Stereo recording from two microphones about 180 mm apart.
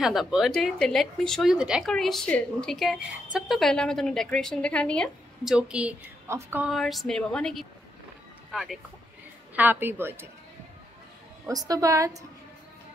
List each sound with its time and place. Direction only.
0.0 s a woman's voice: centre (ahead or behind)
6.7 s a woman's voice: centre (ahead or behind)
11.4 s a woman's voice: 20° right (ahead or behind)